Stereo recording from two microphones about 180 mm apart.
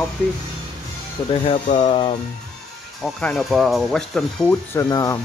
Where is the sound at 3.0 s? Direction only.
5° left (ahead or behind).